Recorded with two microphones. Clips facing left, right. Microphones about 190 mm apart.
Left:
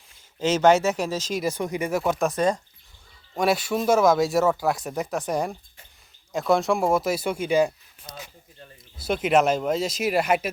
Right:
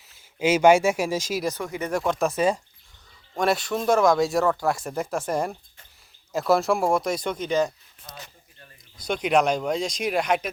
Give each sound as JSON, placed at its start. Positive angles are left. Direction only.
{"t": 0.3, "sound": "speech", "side_deg": -10}
{"t": 1.4, "sound": "speech", "side_deg": 10}
{"t": 1.9, "sound": "speech", "side_deg": 5}
{"t": 9.0, "sound": "speech", "side_deg": 5}